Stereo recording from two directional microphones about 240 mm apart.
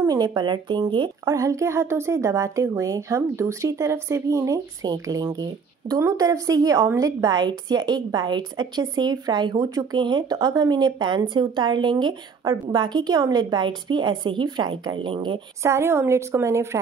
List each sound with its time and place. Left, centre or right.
0.0 s a woman's voice: centre